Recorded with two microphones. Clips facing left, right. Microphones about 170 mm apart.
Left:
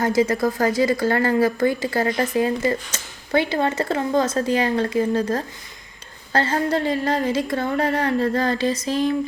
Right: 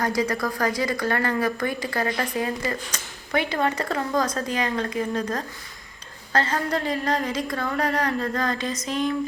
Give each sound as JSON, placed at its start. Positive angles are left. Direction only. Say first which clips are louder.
{"t": 0.0, "sound": "a woman's voice", "louder": "left 5 dB", "side_deg": 25}